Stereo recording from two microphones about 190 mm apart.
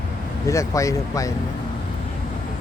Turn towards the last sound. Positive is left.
turn(degrees=15)  # may be behind; listen again after turning